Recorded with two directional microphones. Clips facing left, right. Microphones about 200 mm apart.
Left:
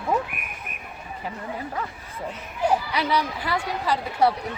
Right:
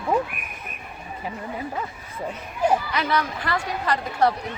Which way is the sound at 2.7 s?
10° left (ahead or behind).